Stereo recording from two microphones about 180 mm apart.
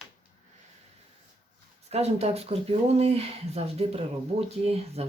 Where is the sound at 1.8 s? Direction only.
35° right (ahead or behind).